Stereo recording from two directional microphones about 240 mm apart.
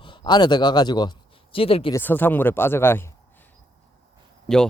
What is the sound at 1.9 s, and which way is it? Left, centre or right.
Speech, centre.